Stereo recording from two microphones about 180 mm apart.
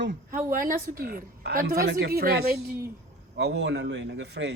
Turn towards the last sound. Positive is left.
turn(degrees=-75)  # may be behind; listen again after turning